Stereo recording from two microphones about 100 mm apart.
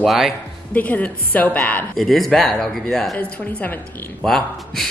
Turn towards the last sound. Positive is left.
turn(degrees=0)  # may be behind; listen again after turning